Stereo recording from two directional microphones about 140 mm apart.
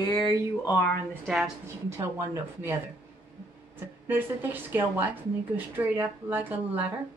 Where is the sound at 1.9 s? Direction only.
20° right (ahead or behind).